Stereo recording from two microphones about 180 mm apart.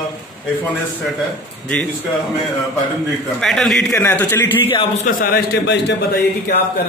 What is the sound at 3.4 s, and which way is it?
A man's voice, centre (ahead or behind).